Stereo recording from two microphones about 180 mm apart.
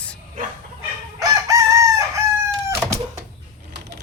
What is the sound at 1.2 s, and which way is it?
Chicken, 20° right (ahead or behind).